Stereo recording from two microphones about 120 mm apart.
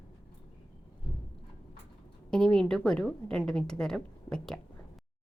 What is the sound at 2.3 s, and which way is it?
A woman's voice, 5° left (ahead or behind).